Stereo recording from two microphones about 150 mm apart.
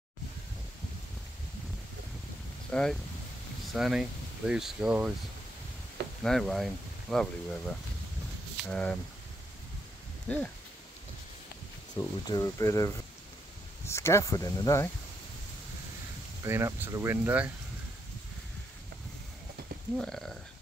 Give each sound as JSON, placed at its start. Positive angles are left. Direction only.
{"t": 2.7, "sound": "speech", "side_deg": 5}
{"t": 6.2, "sound": "speech", "side_deg": 0}
{"t": 8.6, "sound": "speech", "side_deg": 5}
{"t": 10.2, "sound": "speech", "side_deg": 10}
{"t": 11.9, "sound": "speech", "side_deg": 25}
{"t": 16.4, "sound": "speech", "side_deg": -15}
{"t": 20.0, "sound": "speech", "side_deg": 5}